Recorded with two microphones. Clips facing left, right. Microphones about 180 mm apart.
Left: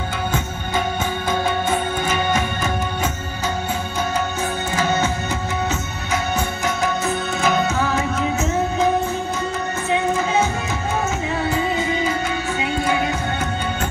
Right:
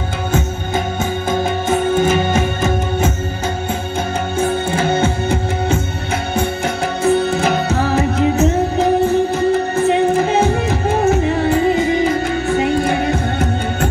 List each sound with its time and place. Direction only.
1.3 s music: 45° right (ahead or behind)
6.3 s music: 30° right (ahead or behind)
12.6 s music: 55° right (ahead or behind)